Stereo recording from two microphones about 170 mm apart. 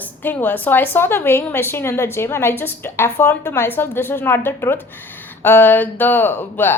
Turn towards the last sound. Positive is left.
turn(degrees=10)  # may be behind; listen again after turning